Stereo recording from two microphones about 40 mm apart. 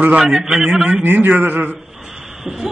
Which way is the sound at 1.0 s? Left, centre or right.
Right.